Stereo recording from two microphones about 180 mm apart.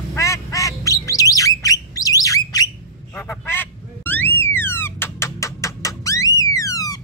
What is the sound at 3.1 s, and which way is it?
Honk, 10° left (ahead or behind).